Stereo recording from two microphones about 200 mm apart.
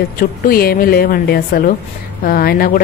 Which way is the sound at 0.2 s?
50° left (ahead or behind).